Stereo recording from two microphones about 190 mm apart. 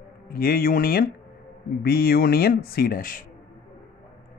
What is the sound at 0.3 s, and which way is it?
Speech, 50° left (ahead or behind).